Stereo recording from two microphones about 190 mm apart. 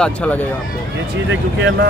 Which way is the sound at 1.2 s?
70° right (ahead or behind).